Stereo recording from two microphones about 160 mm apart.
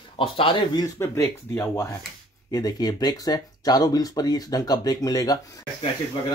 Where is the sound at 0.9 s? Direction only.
20° left (ahead or behind).